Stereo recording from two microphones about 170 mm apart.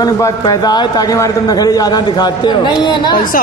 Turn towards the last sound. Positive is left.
turn(degrees=55)  # may be behind; listen again after turning